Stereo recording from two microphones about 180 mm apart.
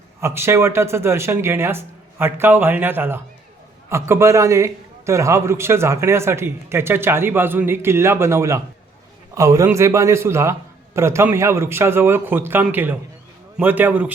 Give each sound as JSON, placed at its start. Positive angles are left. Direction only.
{"t": 0.2, "sound": "a man's voice", "side_deg": -15}